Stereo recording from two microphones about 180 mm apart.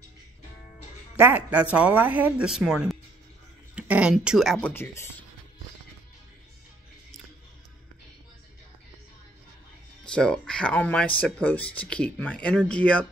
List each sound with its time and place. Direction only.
1.1 s speech: 10° right (ahead or behind); by 5.1 s 10° left (ahead or behind)
10.0 s speech: 5° left (ahead or behind)